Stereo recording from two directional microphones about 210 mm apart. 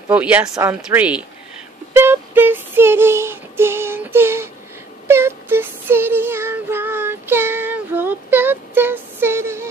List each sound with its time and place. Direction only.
0.1 s speech: 5° right (ahead or behind)
2.0 s child singing: 10° right (ahead or behind)